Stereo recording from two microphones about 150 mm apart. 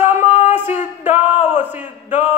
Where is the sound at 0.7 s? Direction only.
50° left (ahead or behind).